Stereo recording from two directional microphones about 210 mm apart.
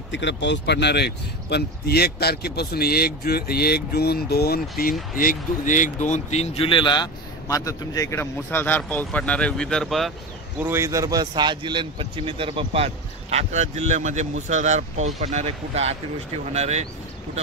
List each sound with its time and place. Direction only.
0.1 s speech: 60° left (ahead or behind); by 10.1 s centre (ahead or behind)
10.6 s speech: 10° right (ahead or behind); by 16.8 s 30° right (ahead or behind)